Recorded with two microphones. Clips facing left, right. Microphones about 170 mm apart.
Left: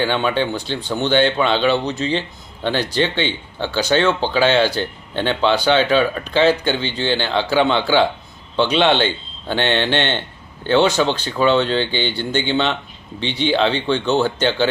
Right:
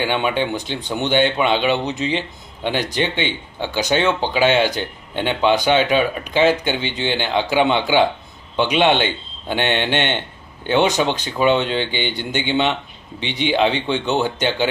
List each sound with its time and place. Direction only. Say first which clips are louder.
0.0 s speech: left 1 dB; 15° right (ahead or behind)